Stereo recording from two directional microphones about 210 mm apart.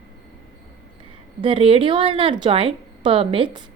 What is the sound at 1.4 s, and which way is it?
A woman's voice, 25° right (ahead or behind).